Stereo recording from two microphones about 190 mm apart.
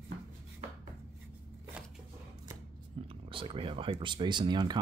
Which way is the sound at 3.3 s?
30° right (ahead or behind).